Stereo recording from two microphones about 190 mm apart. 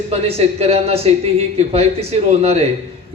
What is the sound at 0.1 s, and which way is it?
A man's voice, 30° right (ahead or behind).